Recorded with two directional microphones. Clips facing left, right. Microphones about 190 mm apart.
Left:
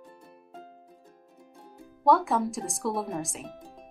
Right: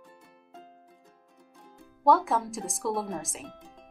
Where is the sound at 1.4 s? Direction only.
25° left (ahead or behind).